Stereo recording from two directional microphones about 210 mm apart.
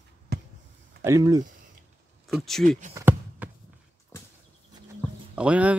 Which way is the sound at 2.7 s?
35° right (ahead or behind).